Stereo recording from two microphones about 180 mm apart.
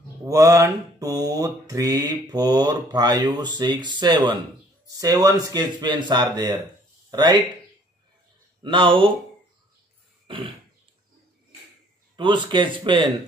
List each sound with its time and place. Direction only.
0.2 s mantra: 15° right (ahead or behind)
7.1 s speech: 25° right (ahead or behind)
8.6 s mantra: 30° right (ahead or behind)
10.2 s throat clearing: 30° right (ahead or behind)
12.2 s mantra: 25° right (ahead or behind)